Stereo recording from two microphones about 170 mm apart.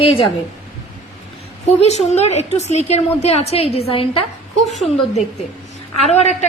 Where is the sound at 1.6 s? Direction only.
40° left (ahead or behind).